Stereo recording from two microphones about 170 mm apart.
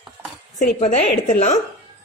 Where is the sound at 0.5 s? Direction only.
45° left (ahead or behind).